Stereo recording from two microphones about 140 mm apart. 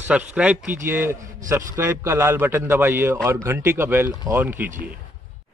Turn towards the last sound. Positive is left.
turn(degrees=-15)  # may be behind; listen again after turning